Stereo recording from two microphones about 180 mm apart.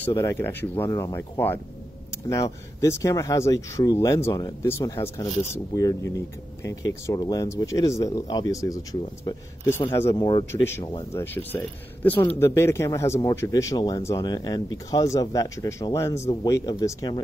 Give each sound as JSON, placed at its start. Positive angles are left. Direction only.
{"t": 0.0, "sound": "speech", "side_deg": 15}
{"t": 10.1, "sound": "speech", "side_deg": 25}
{"t": 10.5, "sound": "speech", "side_deg": 15}